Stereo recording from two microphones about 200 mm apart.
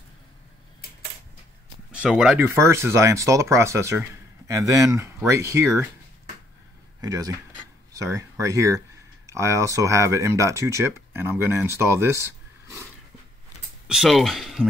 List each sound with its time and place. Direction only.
1.9 s speech: 5° right (ahead or behind)
7.0 s speech: 20° right (ahead or behind)
13.8 s speech: centre (ahead or behind)